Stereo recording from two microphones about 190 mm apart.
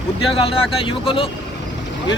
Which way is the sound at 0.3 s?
30° left (ahead or behind).